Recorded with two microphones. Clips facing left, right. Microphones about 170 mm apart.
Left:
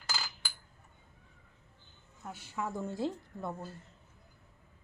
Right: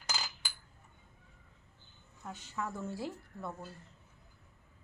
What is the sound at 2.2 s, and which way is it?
A woman's voice, 10° left (ahead or behind).